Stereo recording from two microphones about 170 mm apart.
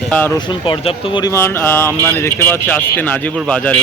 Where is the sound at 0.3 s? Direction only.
30° left (ahead or behind).